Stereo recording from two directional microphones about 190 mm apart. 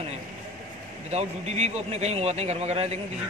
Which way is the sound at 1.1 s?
35° right (ahead or behind).